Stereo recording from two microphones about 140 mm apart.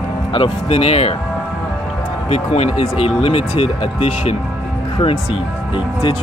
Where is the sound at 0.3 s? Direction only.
40° left (ahead or behind).